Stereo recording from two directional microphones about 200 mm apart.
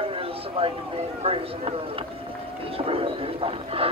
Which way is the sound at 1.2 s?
30° right (ahead or behind).